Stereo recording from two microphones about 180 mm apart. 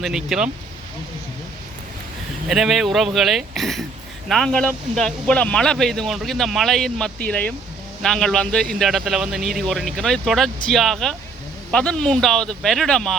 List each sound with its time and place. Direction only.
0.0 s speech: centre (ahead or behind)
2.5 s speech: centre (ahead or behind)